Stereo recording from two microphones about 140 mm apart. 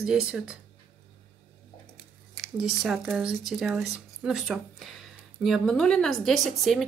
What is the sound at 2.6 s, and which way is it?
Speech, 5° right (ahead or behind).